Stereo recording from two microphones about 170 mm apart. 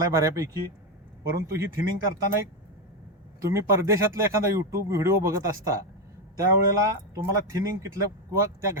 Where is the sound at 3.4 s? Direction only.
15° right (ahead or behind).